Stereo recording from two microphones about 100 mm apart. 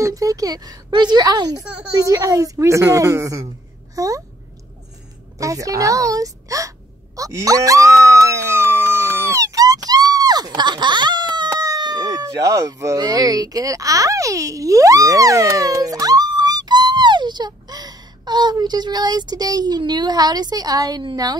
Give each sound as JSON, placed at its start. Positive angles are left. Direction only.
{"t": 0.0, "sound": "speech", "side_deg": -35}
{"t": 1.6, "sound": "a child's voice", "side_deg": -10}
{"t": 2.0, "sound": "a child's voice", "side_deg": -35}
{"t": 5.4, "sound": "a child's voice", "side_deg": -35}
{"t": 7.2, "sound": "a sound", "side_deg": -35}
{"t": 11.6, "sound": "a woman's voice", "side_deg": -40}